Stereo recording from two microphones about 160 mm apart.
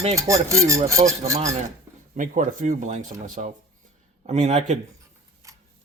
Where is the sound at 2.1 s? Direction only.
55° right (ahead or behind).